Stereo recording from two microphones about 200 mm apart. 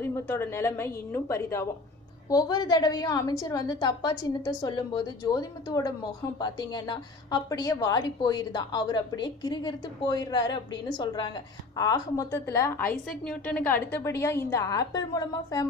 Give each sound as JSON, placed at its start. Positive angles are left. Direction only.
{"t": 0.0, "sound": "a woman's voice", "side_deg": 10}